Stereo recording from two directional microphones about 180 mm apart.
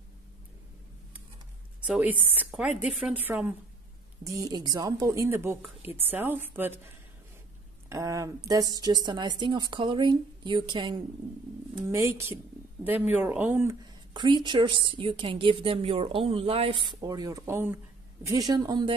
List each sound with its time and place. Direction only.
1.8 s speech: 10° right (ahead or behind)
7.9 s a woman's voice: 20° right (ahead or behind)
11.9 s speech: 15° right (ahead or behind)
14.1 s a woman's voice: 25° right (ahead or behind)